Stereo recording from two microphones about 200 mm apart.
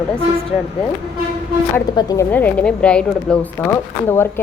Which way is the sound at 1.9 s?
15° left (ahead or behind).